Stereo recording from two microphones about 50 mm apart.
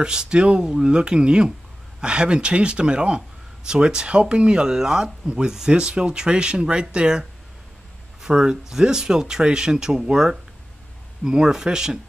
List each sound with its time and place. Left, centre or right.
0.0 s speech: centre